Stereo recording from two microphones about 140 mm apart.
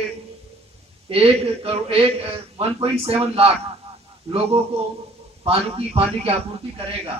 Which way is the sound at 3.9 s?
45° right (ahead or behind).